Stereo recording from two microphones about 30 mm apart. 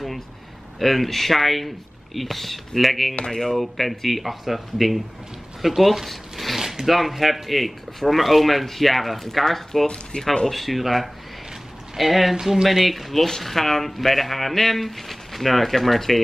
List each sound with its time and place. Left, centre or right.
0.7 s speech: centre
3.3 s speech: left
3.5 s speech: centre
10.1 s speech: left
10.5 s speech: centre
12.4 s speech: centre
12.6 s speech: centre